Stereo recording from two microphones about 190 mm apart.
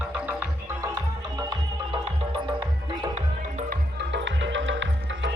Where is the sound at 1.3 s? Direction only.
25° right (ahead or behind).